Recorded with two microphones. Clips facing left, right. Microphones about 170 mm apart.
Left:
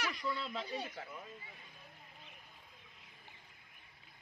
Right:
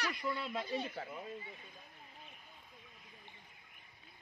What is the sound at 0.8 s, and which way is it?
Speech, 30° right (ahead or behind).